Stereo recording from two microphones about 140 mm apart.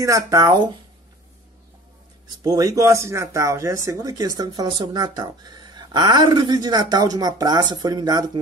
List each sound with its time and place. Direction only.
0.0 s speech: 25° right (ahead or behind)
2.4 s speech: 25° right (ahead or behind)